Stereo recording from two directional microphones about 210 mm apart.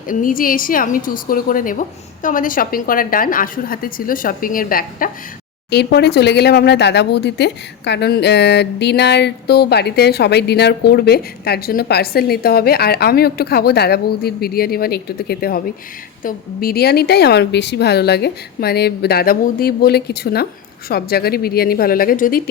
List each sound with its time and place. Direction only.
0.1 s a woman's voice: 40° left (ahead or behind)